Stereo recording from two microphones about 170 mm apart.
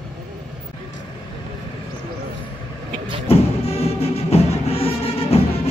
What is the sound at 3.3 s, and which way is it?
Music, 35° left (ahead or behind).